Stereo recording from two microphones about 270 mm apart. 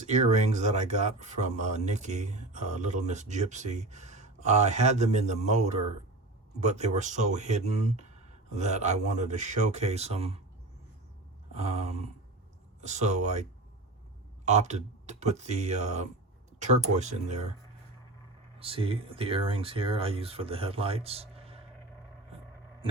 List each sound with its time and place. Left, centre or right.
0.0 s speech: right
11.5 s speech: right
18.6 s speech: centre